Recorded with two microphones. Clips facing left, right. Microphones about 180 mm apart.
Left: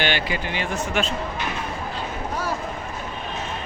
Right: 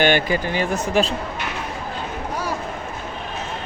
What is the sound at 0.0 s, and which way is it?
Speech, 45° right (ahead or behind).